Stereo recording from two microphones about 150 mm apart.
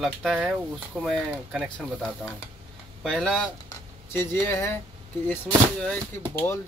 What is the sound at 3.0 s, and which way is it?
Speech, centre (ahead or behind).